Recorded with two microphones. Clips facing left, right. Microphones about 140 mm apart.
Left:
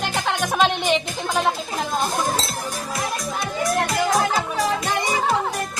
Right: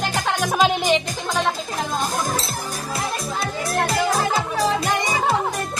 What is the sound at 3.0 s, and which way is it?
Music, 30° right (ahead or behind).